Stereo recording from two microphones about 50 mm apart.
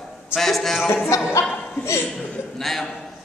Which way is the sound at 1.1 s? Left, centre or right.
Left.